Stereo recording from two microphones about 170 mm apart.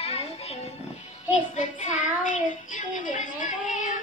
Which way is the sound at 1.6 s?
45° left (ahead or behind).